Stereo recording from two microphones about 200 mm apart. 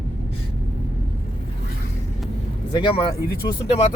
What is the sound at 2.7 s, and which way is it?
Speech, 25° left (ahead or behind).